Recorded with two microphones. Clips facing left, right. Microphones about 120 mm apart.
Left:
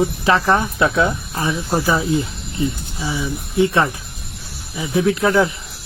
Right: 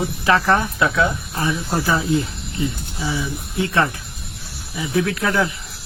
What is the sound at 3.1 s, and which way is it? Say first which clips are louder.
Speech: left 6 dB; 20° left (ahead or behind).